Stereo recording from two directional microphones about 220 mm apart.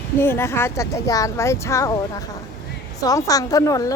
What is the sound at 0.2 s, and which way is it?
A woman's voice, 10° left (ahead or behind).